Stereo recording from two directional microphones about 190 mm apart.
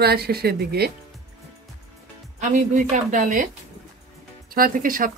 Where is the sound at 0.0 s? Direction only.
55° right (ahead or behind).